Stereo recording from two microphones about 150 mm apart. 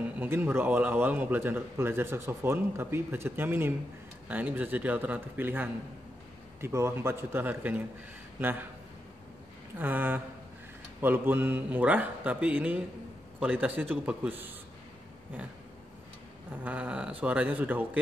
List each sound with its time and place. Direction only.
0.0 s speech: 10° right (ahead or behind)
9.8 s speech: 10° right (ahead or behind)
16.6 s speech: 10° right (ahead or behind)